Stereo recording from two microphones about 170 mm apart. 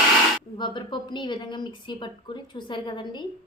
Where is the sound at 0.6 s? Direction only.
25° left (ahead or behind).